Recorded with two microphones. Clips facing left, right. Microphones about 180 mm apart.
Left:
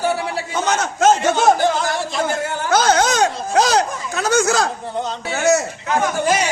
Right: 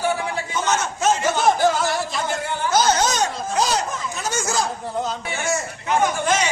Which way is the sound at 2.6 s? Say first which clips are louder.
Left 3 dB; 65° left (ahead or behind).